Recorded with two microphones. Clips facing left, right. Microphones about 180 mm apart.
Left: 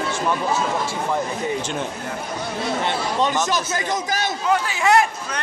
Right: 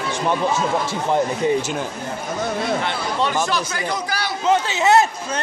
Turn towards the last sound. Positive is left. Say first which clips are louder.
# right 2 dB
turn(degrees=-25)  # may be behind; listen again after turning